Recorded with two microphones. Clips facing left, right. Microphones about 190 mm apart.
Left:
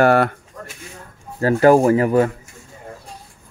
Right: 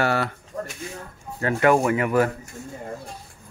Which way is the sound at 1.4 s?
35° left (ahead or behind).